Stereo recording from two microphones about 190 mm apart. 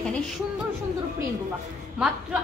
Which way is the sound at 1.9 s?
5° right (ahead or behind).